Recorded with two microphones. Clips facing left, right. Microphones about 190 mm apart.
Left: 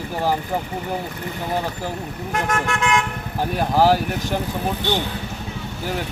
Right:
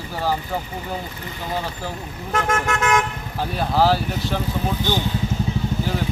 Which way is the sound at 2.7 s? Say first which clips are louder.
Right 2 dB; 45° right (ahead or behind).